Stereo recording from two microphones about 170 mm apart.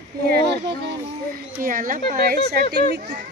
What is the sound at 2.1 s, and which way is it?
Speech, 65° right (ahead or behind).